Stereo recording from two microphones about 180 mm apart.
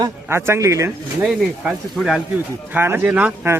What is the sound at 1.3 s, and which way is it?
Speech, centre (ahead or behind).